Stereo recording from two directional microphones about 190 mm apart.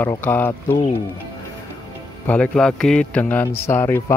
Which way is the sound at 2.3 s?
5° left (ahead or behind).